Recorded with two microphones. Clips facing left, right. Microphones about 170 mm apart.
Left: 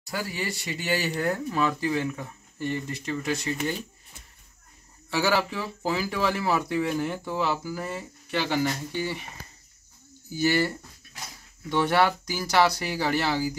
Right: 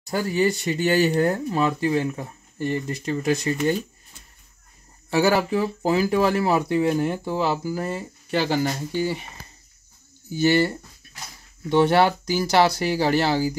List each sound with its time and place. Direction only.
0.1 s speech: 45° right (ahead or behind)
5.1 s speech: 40° right (ahead or behind)
10.3 s speech: 25° right (ahead or behind)